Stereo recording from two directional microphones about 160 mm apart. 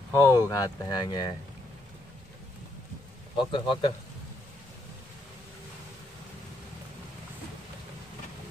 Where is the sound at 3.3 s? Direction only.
30° left (ahead or behind).